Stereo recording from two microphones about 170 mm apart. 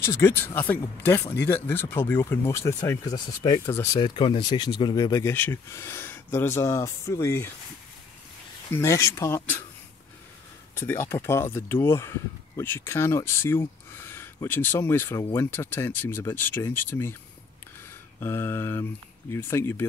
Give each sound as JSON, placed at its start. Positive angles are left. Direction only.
{"t": 0.0, "sound": "speech", "side_deg": 15}
{"t": 8.7, "sound": "speech", "side_deg": 15}
{"t": 10.8, "sound": "speech", "side_deg": 15}
{"t": 18.2, "sound": "speech", "side_deg": 15}